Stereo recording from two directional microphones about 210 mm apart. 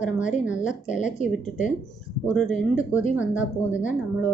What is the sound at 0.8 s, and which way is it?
Speech, 35° left (ahead or behind).